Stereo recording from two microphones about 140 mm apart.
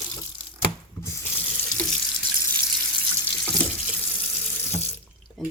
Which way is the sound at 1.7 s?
10° left (ahead or behind).